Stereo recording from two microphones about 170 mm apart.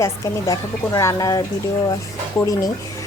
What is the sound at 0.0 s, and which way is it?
A woman's voice, 20° left (ahead or behind).